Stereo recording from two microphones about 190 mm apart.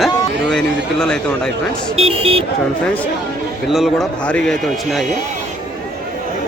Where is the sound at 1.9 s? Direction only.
30° right (ahead or behind).